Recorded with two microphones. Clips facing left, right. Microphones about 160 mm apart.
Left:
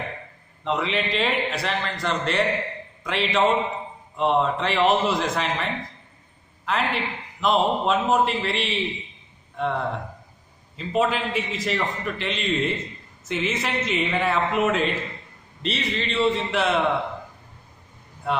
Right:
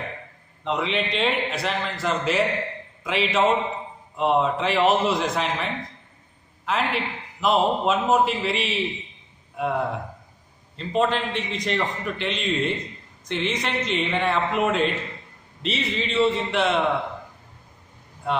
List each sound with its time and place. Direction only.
0.7 s a man's voice: centre (ahead or behind)
10.8 s a man's voice: 5° left (ahead or behind)